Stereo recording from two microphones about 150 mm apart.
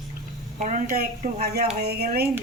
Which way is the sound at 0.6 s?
55° right (ahead or behind).